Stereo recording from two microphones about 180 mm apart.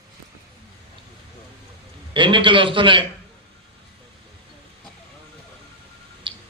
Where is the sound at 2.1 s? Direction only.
25° right (ahead or behind).